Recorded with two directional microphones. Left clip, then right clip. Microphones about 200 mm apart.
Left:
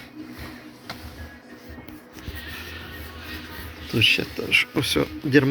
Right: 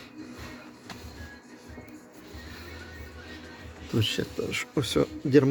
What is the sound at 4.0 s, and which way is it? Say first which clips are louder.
Speech: left 9 dB; 20° right (ahead or behind).